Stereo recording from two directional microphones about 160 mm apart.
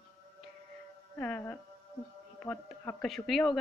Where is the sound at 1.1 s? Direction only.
10° left (ahead or behind).